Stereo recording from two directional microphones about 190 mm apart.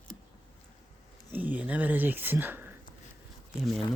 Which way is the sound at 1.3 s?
10° right (ahead or behind).